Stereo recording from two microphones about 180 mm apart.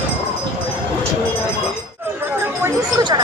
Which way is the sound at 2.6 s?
20° right (ahead or behind).